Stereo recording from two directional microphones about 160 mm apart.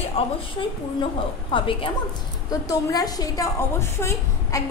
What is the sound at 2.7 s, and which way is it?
A woman's voice, 25° left (ahead or behind).